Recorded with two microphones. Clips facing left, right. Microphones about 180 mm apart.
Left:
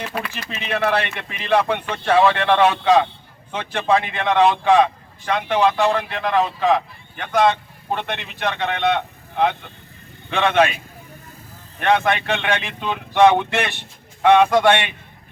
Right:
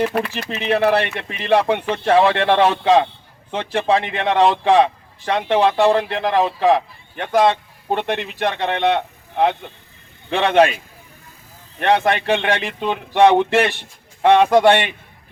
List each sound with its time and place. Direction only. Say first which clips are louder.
0.4 s a man's voice: right 4 dB; 30° right (ahead or behind)
10.3 s a man's voice: right 3 dB; 35° right (ahead or behind)
11.8 s a man's voice: right 2 dB; 35° right (ahead or behind)